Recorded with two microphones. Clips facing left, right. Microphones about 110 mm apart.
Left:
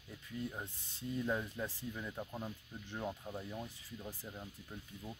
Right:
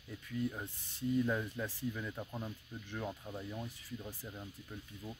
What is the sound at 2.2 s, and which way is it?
Speech, 5° left (ahead or behind).